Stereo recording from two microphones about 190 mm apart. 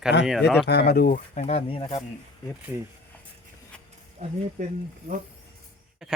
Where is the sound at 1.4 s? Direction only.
35° left (ahead or behind).